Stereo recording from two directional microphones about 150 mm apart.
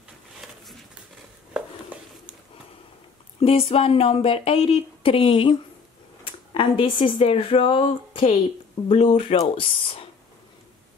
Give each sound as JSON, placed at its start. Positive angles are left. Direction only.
{"t": 3.3, "sound": "speech", "side_deg": 40}
{"t": 6.2, "sound": "a sound", "side_deg": 40}
{"t": 7.2, "sound": "speech", "side_deg": 40}